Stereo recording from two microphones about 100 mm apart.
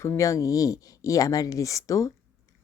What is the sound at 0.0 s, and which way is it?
Speech, 30° left (ahead or behind).